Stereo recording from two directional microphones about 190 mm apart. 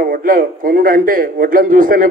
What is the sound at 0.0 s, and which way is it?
A man's voice, 45° right (ahead or behind).